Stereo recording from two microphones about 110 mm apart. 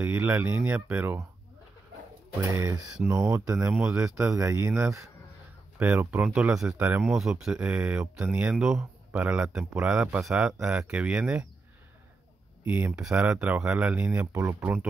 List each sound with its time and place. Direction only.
0.0 s speech: 20° right (ahead or behind)
2.5 s speech: 25° right (ahead or behind)
5.8 s a man's voice: 20° right (ahead or behind)
12.6 s a man's voice: 15° right (ahead or behind)
14.2 s speech: 30° right (ahead or behind)
14.6 s a man's voice: 15° right (ahead or behind)